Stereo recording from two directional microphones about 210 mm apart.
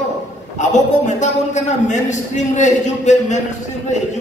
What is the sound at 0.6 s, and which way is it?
A man's voice, 35° left (ahead or behind).